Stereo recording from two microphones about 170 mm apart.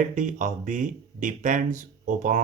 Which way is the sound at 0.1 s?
45° right (ahead or behind).